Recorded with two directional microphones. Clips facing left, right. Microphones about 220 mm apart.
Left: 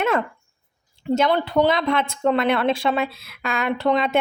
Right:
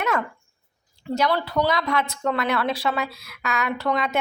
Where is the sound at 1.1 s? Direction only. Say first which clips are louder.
Left 4 dB; 25° left (ahead or behind).